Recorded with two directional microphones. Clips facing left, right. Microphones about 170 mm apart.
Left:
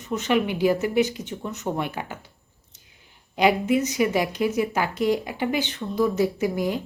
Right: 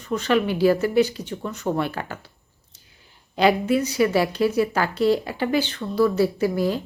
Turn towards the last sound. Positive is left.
turn(degrees=15)  # may be behind; listen again after turning